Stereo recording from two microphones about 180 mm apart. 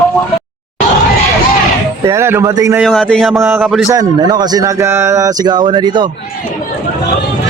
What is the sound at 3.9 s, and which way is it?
Speech, 20° right (ahead or behind).